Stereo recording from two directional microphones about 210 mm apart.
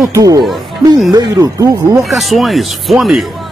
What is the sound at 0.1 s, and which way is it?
Speech, 15° right (ahead or behind).